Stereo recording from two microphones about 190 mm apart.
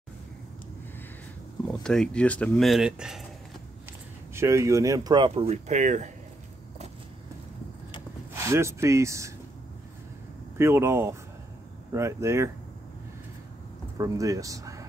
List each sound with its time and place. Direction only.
1.7 s speech: 5° left (ahead or behind)
4.3 s speech: 15° right (ahead or behind); by 6.1 s 40° right (ahead or behind)
8.3 s speech: 15° right (ahead or behind)
10.6 s speech: 15° right (ahead or behind)
13.9 s speech: 15° right (ahead or behind)